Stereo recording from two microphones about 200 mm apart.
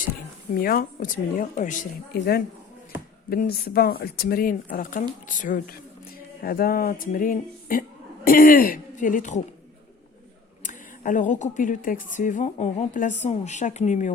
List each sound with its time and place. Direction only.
0.5 s speech: 45° left (ahead or behind)
3.2 s speech: 50° left (ahead or behind)
10.6 s speech: 40° left (ahead or behind)